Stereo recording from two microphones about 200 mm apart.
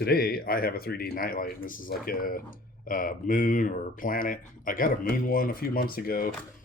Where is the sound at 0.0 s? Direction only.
50° left (ahead or behind).